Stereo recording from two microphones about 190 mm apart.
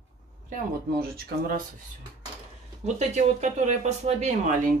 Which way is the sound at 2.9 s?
35° right (ahead or behind).